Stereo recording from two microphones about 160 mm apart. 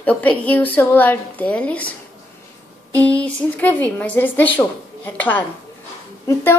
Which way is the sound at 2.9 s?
10° left (ahead or behind).